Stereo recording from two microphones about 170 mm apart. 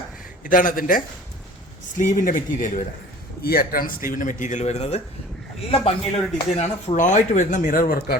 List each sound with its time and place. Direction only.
0.4 s speech: 55° left (ahead or behind)
3.4 s a man's voice: 60° left (ahead or behind)